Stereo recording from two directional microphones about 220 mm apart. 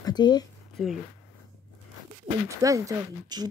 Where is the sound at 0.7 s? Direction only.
Centre (ahead or behind).